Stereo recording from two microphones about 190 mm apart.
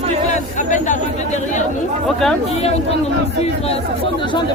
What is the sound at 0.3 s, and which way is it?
Chatter, 40° left (ahead or behind).